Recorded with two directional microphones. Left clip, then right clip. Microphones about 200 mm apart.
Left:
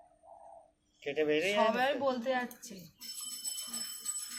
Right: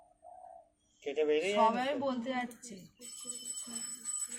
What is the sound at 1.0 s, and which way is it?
Speech, 20° right (ahead or behind).